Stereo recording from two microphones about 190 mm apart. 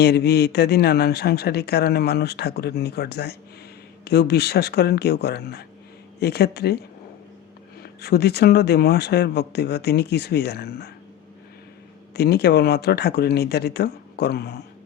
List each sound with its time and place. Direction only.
0.0 s speech: 60° left (ahead or behind)
7.8 s speech: 60° left (ahead or behind)
12.1 s speech: 55° left (ahead or behind)